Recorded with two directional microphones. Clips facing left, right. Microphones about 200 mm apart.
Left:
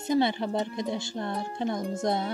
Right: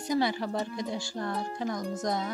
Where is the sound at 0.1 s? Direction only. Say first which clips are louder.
Left 3 dB; 25° left (ahead or behind).